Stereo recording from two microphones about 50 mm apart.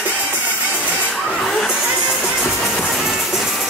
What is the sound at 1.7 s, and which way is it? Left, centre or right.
Music, centre.